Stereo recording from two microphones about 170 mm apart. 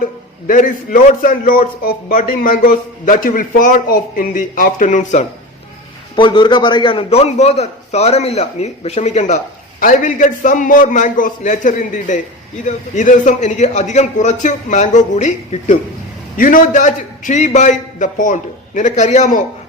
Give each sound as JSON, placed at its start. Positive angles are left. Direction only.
{"t": 0.0, "sound": "a man's voice", "side_deg": 50}
{"t": 6.1, "sound": "a man's voice", "side_deg": 30}